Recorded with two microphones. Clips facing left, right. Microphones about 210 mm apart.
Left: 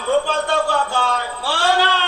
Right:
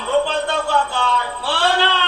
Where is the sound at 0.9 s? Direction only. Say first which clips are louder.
Even; 45° left (ahead or behind).